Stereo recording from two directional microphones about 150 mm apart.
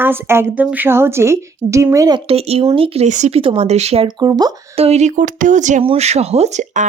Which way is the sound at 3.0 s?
50° right (ahead or behind).